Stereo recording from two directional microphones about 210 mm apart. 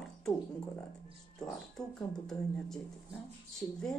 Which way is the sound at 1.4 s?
Centre (ahead or behind).